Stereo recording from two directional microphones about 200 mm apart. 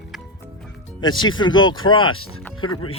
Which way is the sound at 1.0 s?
20° left (ahead or behind).